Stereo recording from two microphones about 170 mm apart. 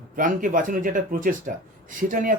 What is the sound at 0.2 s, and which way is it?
Speech, 50° right (ahead or behind).